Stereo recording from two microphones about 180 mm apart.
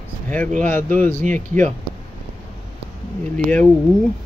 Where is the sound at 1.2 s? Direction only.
45° right (ahead or behind).